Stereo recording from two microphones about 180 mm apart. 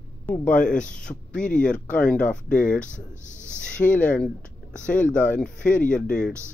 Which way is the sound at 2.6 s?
45° left (ahead or behind).